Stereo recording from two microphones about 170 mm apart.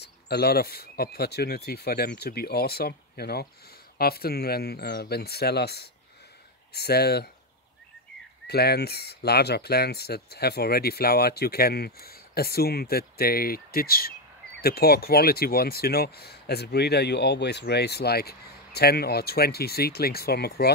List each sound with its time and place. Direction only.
0.0 s speech: 75° left (ahead or behind)
8.5 s speech: 70° left (ahead or behind)